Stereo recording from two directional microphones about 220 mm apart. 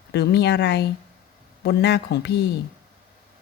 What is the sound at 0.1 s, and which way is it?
Speech, 50° left (ahead or behind).